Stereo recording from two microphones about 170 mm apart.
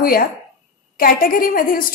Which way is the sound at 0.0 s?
60° left (ahead or behind).